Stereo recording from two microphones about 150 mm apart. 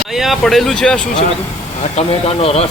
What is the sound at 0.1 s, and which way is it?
Speech, centre (ahead or behind).